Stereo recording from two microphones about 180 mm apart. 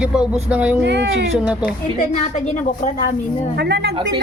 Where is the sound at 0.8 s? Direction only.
70° right (ahead or behind).